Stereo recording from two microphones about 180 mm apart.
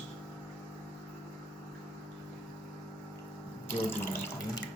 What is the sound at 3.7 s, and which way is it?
Speech, 15° left (ahead or behind).